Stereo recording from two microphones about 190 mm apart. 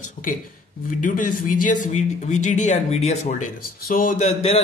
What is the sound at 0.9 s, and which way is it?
Speech, 45° left (ahead or behind).